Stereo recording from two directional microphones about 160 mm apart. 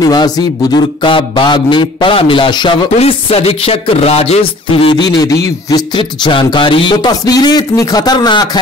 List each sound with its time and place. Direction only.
0.0 s speech: 25° left (ahead or behind)
3.0 s music: 35° left (ahead or behind)
5.7 s speech: 30° left (ahead or behind)